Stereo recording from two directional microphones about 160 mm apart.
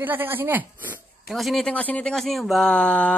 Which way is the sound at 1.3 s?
Centre (ahead or behind).